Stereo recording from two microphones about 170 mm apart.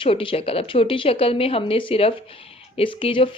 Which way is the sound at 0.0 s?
30° left (ahead or behind).